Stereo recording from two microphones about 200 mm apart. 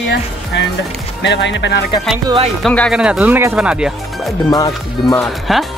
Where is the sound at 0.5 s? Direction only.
60° left (ahead or behind).